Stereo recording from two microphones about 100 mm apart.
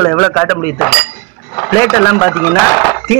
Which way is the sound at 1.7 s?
30° left (ahead or behind).